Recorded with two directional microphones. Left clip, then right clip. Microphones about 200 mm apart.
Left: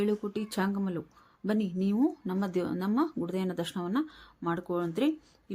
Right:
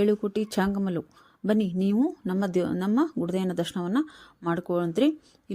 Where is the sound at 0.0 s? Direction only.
35° right (ahead or behind).